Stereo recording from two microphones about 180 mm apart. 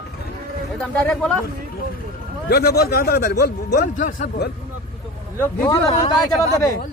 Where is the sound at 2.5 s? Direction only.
60° left (ahead or behind).